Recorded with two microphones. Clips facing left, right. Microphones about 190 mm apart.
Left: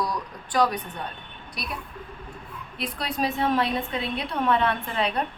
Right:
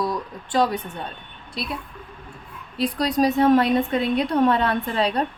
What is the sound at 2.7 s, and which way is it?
A woman's voice, 35° right (ahead or behind).